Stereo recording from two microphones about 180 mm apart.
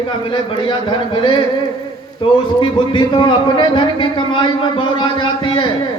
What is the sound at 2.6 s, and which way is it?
A man's voice, 25° left (ahead or behind).